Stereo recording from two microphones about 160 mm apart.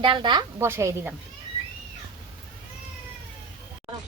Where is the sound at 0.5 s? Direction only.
15° right (ahead or behind).